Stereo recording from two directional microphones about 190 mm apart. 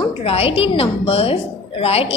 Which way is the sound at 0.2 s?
30° left (ahead or behind).